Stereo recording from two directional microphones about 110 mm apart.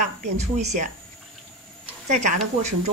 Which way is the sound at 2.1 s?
90° right.